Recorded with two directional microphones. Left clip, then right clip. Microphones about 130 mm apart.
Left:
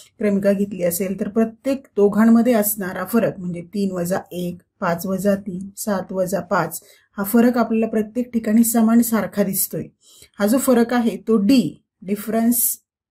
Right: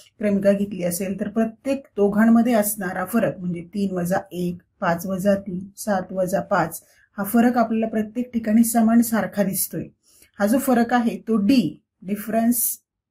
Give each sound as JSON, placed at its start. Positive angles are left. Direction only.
{"t": 0.2, "sound": "speech", "side_deg": 30}